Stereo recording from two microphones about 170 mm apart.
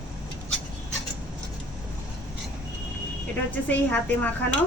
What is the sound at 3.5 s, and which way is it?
Speech, 10° left (ahead or behind).